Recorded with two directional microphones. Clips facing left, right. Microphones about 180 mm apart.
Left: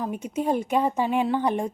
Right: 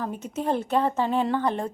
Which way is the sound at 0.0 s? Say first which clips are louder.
Left 2 dB; 15° left (ahead or behind).